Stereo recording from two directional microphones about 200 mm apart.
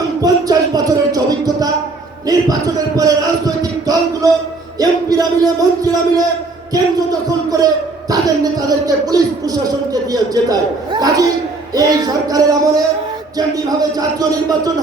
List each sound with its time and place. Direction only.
0.2 s music: 20° right (ahead or behind)
2.2 s a man's voice: 20° right (ahead or behind)
4.8 s music: 20° right (ahead or behind)
6.7 s a man's voice: 20° right (ahead or behind)
8.1 s music: 20° right (ahead or behind)
13.9 s a man's voice: 20° right (ahead or behind)